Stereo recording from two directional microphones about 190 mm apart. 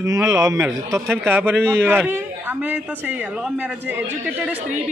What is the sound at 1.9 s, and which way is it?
Speech, 10° right (ahead or behind).